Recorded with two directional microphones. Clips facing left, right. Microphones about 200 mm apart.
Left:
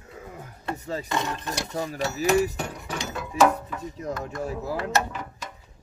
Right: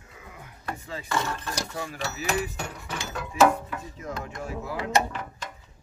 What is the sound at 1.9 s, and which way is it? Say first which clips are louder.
Speech: left 6 dB; 40° left (ahead or behind).